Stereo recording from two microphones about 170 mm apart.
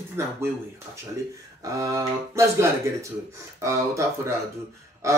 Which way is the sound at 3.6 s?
15° right (ahead or behind).